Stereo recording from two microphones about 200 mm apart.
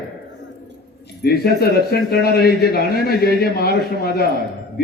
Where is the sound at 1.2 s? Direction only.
50° left (ahead or behind).